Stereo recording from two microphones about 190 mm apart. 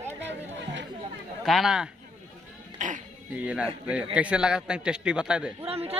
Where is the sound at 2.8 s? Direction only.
40° right (ahead or behind).